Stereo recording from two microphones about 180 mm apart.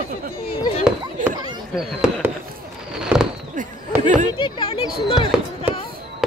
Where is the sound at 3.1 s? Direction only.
10° right (ahead or behind).